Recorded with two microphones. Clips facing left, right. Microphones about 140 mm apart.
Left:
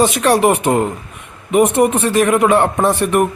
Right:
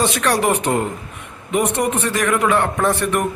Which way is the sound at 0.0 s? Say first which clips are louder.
Left 5 dB; 20° left (ahead or behind).